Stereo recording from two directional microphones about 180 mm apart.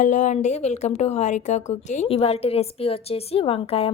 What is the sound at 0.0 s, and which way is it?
A woman's voice, 45° left (ahead or behind).